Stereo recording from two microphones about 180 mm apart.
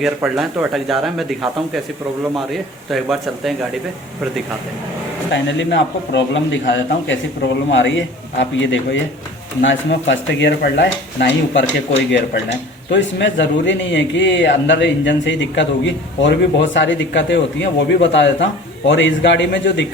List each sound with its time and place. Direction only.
0.3 s speech: centre (ahead or behind)
5.3 s a man's voice: 85° left
12.9 s a man's voice: 85° left